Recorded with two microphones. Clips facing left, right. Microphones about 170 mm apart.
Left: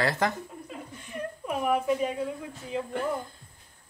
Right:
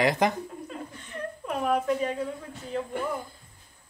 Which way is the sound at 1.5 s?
10° left (ahead or behind).